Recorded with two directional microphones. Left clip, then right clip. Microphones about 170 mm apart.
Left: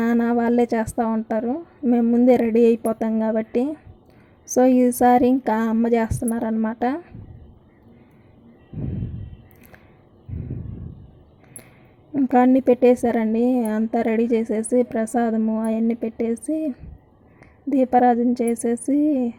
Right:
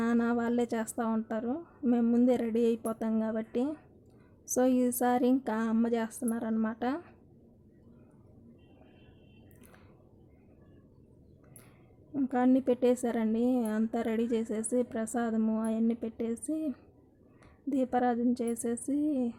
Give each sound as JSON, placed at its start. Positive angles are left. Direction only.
{"t": 0.0, "sound": "a woman's voice", "side_deg": 20}
{"t": 12.5, "sound": "a woman's voice", "side_deg": 20}